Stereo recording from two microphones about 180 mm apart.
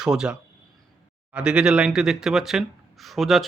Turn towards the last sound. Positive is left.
turn(degrees=0)  # may be behind; listen again after turning